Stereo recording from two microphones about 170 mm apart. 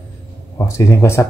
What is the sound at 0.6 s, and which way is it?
Speech, 15° left (ahead or behind).